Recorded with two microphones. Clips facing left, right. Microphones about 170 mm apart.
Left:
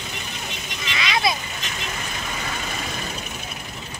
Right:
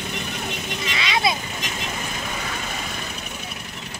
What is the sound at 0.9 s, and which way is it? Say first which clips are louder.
Vehicle: even; 30° right (ahead or behind).